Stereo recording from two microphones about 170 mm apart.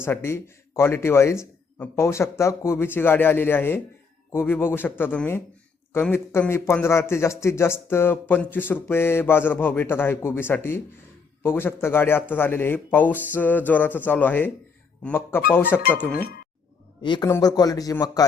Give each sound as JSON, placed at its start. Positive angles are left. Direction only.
{"t": 0.0, "sound": "a man's voice", "side_deg": 15}
{"t": 16.2, "sound": "speech", "side_deg": 60}
{"t": 17.0, "sound": "a man's voice", "side_deg": 25}